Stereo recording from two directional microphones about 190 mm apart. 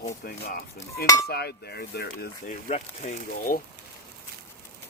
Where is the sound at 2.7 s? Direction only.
40° left (ahead or behind).